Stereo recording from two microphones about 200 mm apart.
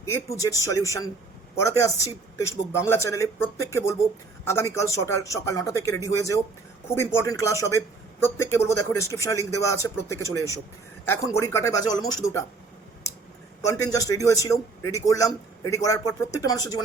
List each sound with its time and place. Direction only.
0.1 s a man's voice: 15° left (ahead or behind)
13.7 s a man's voice: 15° left (ahead or behind)